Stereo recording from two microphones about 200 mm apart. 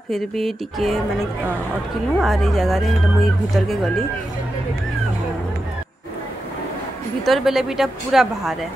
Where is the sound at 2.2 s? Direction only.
Centre (ahead or behind).